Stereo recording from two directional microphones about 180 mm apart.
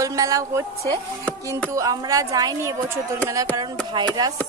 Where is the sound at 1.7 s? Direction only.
20° right (ahead or behind).